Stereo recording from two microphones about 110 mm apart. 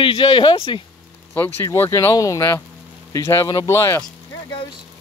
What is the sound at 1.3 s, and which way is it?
Speech, 20° left (ahead or behind).